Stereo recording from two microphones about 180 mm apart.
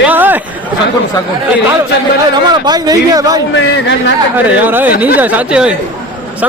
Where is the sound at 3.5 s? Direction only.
80° left.